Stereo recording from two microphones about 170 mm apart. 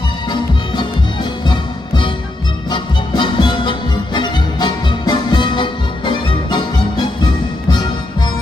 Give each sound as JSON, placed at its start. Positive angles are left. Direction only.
{"t": 2.7, "sound": "music", "side_deg": 30}